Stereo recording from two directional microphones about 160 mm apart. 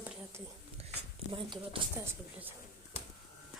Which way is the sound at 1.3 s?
35° right (ahead or behind).